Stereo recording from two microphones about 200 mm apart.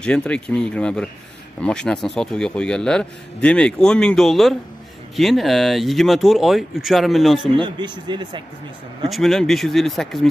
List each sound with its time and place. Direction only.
0.0 s a man's voice: 5° left (ahead or behind)
7.5 s speech: 20° right (ahead or behind)
9.1 s a man's voice: centre (ahead or behind)